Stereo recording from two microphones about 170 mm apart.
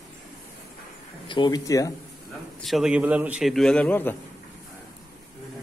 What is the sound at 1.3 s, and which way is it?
Speech, 25° left (ahead or behind).